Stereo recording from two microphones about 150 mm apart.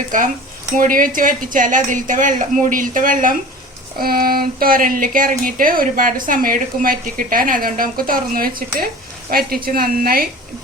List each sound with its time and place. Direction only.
0.1 s a woman's voice: 60° right (ahead or behind)
4.0 s speech: 80° right